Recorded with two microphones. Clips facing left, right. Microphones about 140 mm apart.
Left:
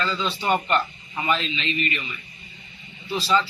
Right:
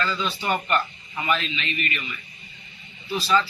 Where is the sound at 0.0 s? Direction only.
25° left (ahead or behind).